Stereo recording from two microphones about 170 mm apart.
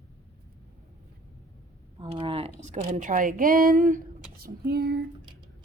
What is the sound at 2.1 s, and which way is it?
A woman's voice, 35° right (ahead or behind).